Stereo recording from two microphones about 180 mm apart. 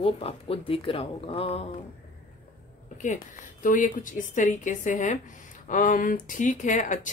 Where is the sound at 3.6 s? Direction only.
45° left (ahead or behind).